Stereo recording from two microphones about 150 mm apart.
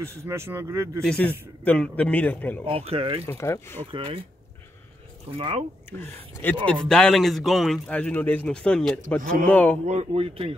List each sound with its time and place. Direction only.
0.0 s speech: 20° right (ahead or behind)
1.0 s speech: 5° left (ahead or behind)
2.6 s speech: 40° right (ahead or behind)
3.3 s speech: 20° left (ahead or behind)
3.9 s speech: 35° right (ahead or behind)
5.4 s speech: 40° right (ahead or behind)
5.9 s speech: 15° left (ahead or behind)
9.8 s speech: 45° right (ahead or behind)